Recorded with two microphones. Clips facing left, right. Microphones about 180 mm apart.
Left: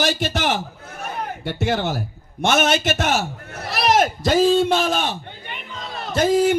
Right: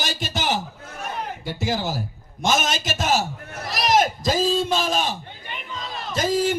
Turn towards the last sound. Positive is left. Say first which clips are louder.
# left 5 dB
turn(degrees=65)  # may be behind; listen again after turning